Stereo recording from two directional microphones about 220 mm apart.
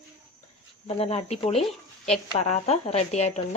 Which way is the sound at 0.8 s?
25° left (ahead or behind).